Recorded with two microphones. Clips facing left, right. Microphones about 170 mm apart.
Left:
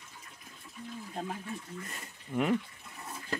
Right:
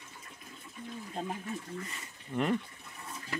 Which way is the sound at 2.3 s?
10° left (ahead or behind).